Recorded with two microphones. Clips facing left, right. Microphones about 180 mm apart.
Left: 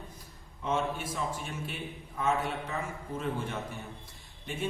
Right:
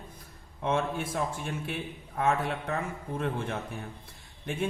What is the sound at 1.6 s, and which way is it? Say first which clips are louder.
A man's voice: right 3 dB; 60° right (ahead or behind).